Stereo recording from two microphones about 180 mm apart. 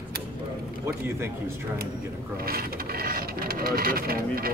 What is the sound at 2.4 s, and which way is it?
Speech, 55° right (ahead or behind).